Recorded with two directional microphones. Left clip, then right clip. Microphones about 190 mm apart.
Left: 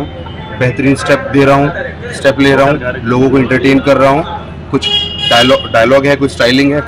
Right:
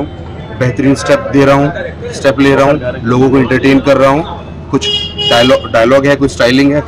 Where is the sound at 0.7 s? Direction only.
5° right (ahead or behind).